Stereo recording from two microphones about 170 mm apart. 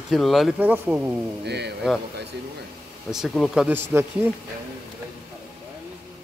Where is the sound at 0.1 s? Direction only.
Centre (ahead or behind).